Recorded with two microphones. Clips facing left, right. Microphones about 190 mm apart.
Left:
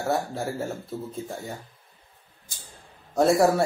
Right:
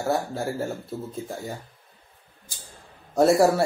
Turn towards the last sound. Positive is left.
turn(degrees=0)  # may be behind; listen again after turning